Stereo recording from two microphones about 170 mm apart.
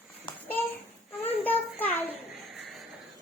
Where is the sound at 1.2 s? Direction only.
10° left (ahead or behind).